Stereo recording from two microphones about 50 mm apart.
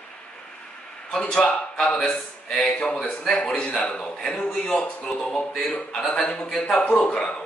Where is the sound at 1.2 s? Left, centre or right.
Centre.